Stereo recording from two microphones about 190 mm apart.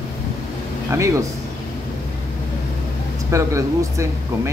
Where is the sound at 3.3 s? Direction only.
15° right (ahead or behind).